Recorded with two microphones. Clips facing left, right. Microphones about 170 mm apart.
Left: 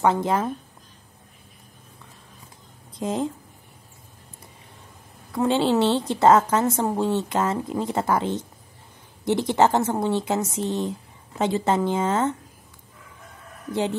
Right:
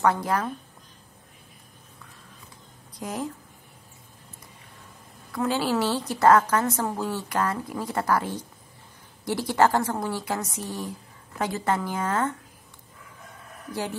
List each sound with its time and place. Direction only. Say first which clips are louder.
0.0 s a woman's voice: left 3 dB; 20° left (ahead or behind)
2.9 s a woman's voice: left 6 dB; 25° left (ahead or behind)
5.3 s a woman's voice: left 5 dB; 25° left (ahead or behind)
13.7 s a woman's voice: left 6 dB; 25° left (ahead or behind)